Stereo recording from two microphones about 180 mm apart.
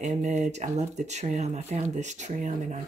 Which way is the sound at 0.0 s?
40° right (ahead or behind).